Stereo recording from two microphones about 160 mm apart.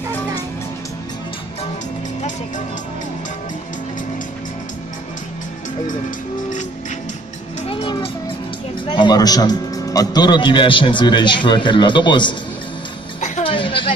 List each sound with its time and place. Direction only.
5.9 s music: 55° left (ahead or behind)
7.6 s music: 35° left (ahead or behind)
8.8 s a man's voice: 30° left (ahead or behind)
13.4 s a sound: 35° left (ahead or behind)